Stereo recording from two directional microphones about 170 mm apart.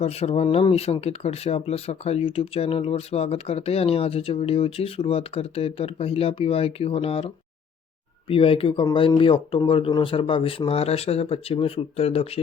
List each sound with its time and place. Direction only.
0.0 s speech: 35° left (ahead or behind)